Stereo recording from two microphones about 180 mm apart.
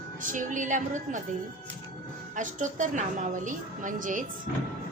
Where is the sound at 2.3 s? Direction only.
45° right (ahead or behind).